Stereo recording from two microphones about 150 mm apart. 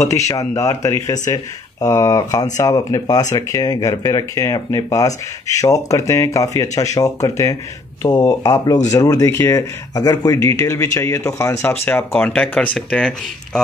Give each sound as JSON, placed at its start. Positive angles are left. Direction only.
{"t": 0.1, "sound": "speech", "side_deg": 20}